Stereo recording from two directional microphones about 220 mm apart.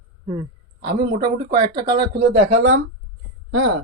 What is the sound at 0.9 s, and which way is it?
Speech, 45° right (ahead or behind).